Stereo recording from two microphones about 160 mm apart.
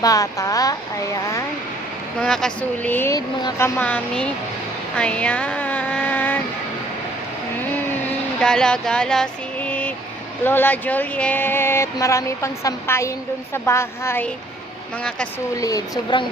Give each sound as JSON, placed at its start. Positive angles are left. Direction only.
{"t": 0.0, "sound": "speech", "side_deg": 20}
{"t": 2.2, "sound": "speech", "side_deg": 5}
{"t": 4.9, "sound": "a sound", "side_deg": 5}
{"t": 8.4, "sound": "a sound", "side_deg": 5}
{"t": 10.4, "sound": "speech", "side_deg": 15}
{"t": 15.5, "sound": "speech", "side_deg": 20}